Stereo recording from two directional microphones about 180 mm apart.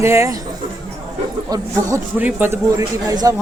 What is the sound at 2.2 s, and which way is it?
Speech, 10° right (ahead or behind).